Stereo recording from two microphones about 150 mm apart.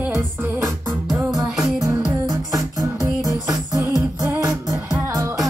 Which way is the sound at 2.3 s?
25° right (ahead or behind).